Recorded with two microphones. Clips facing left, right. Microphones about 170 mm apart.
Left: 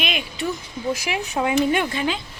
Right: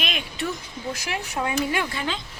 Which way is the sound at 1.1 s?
20° left (ahead or behind).